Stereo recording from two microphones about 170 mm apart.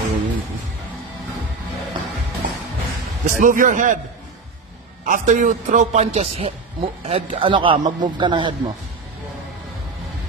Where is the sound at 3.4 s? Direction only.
50° right (ahead or behind).